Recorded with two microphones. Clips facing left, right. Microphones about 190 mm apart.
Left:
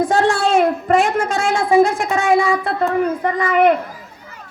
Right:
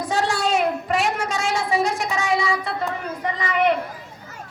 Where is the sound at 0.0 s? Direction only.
50° left (ahead or behind).